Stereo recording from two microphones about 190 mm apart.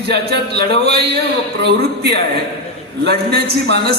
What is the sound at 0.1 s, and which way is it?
A man's voice, 60° right (ahead or behind).